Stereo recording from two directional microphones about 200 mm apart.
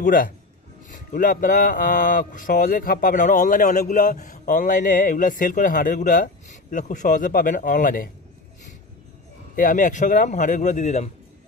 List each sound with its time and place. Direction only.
0.0 s speech: 45° left (ahead or behind)
9.6 s speech: 40° left (ahead or behind)